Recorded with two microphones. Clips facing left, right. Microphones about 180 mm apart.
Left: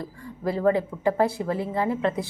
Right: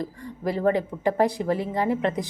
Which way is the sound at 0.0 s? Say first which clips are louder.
Right 1 dB; 15° right (ahead or behind).